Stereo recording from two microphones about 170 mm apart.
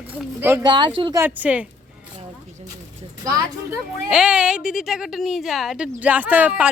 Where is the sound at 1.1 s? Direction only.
10° right (ahead or behind).